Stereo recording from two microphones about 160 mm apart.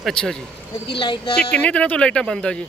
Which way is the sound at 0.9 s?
30° left (ahead or behind).